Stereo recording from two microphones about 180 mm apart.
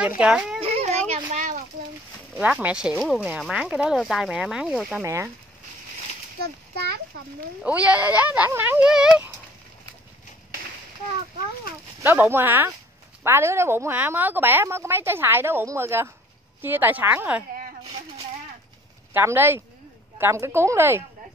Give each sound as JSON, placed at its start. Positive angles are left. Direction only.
{"t": 0.0, "sound": "speech", "side_deg": -5}
{"t": 0.6, "sound": "a sound", "side_deg": -35}
{"t": 2.3, "sound": "speech", "side_deg": -5}
{"t": 5.0, "sound": "a woman's voice", "side_deg": -15}
{"t": 6.4, "sound": "a child's voice", "side_deg": -60}
{"t": 7.6, "sound": "a woman's voice", "side_deg": -10}
{"t": 12.0, "sound": "a woman's voice", "side_deg": -10}
{"t": 19.1, "sound": "a woman's voice", "side_deg": -10}